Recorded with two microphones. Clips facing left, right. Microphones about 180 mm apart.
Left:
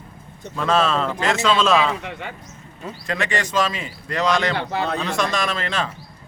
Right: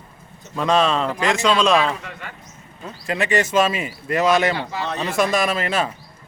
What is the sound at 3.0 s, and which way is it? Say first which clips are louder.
Speech: right 4 dB; 15° right (ahead or behind).